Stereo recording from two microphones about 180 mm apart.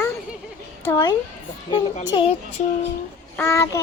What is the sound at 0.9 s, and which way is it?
A child's voice, 20° left (ahead or behind).